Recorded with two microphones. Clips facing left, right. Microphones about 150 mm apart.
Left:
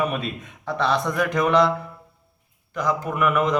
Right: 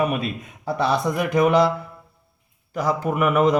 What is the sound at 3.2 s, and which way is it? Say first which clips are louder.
Speech: right 3 dB; 35° right (ahead or behind).